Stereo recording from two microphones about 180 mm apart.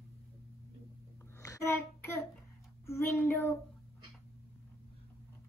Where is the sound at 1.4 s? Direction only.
15° left (ahead or behind).